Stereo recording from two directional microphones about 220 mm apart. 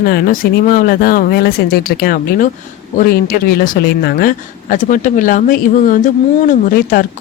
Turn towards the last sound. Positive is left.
turn(degrees=40)  # may be behind; listen again after turning